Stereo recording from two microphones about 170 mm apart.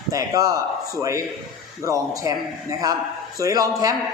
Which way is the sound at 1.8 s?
20° right (ahead or behind).